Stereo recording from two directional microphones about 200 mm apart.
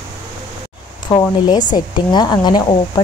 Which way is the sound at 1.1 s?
20° left (ahead or behind).